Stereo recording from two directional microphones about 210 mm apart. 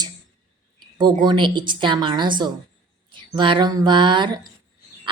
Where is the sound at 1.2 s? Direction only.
20° right (ahead or behind).